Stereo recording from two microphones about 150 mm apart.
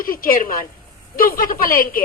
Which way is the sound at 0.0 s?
70° left (ahead or behind).